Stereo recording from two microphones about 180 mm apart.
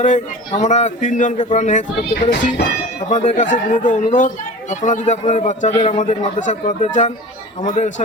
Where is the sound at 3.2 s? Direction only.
45° left (ahead or behind).